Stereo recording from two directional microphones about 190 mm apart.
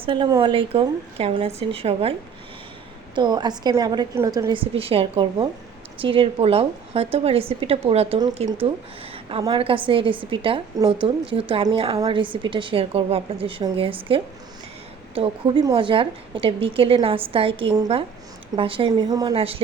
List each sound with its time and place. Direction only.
0.0 s a woman's voice: 25° right (ahead or behind)
3.2 s a woman's voice: 25° right (ahead or behind)